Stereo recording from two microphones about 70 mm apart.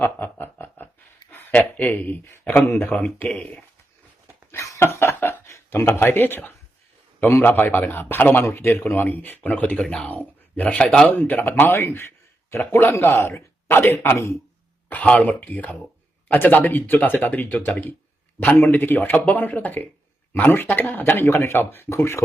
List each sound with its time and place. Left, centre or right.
0.0 s a sound: left
1.5 s a man's voice: left
3.2 s speech: centre
4.5 s speech: left
9.7 s speech: centre
10.1 s a man's voice: left
14.8 s a man's voice: left